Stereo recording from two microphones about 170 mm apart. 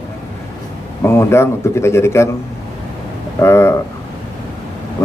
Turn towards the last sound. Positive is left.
turn(degrees=15)  # may be behind; listen again after turning